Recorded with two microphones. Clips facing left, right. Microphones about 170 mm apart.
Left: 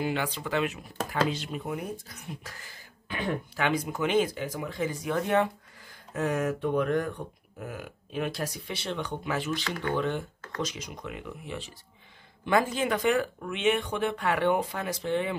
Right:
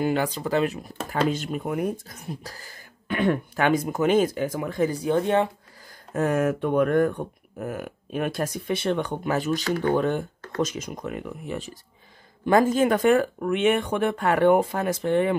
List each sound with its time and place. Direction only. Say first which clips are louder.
0.0 s speech: right 6 dB; 40° right (ahead or behind)
3.1 s speech: right 8 dB; 60° right (ahead or behind); by 5.5 s 30° right (ahead or behind)
5.9 s speech: right 5 dB; 50° right (ahead or behind)